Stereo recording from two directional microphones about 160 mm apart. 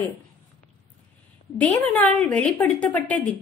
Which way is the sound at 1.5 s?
10° left (ahead or behind).